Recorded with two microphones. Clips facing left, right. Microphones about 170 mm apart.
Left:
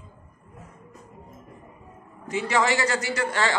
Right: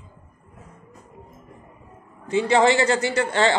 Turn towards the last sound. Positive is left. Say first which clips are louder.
# right 5 dB
turn(degrees=-30)  # may be behind; listen again after turning